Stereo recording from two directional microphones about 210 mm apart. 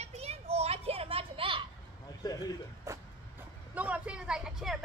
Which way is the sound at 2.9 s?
15° right (ahead or behind).